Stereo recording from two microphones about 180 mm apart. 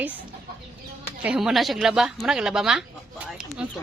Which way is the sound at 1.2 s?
5° right (ahead or behind).